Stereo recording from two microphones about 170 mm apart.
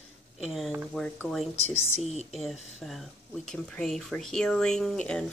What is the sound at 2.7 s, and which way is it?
Speech, centre (ahead or behind).